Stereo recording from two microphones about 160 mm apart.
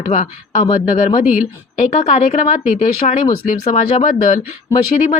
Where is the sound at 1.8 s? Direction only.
45° left (ahead or behind).